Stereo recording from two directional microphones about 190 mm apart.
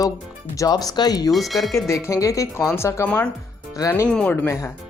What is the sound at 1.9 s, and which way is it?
Speech, 15° left (ahead or behind).